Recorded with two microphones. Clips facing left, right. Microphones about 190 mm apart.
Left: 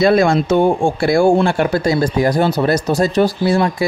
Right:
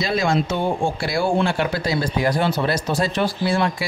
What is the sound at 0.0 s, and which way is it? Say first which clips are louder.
Speech: left 8 dB; 55° left (ahead or behind).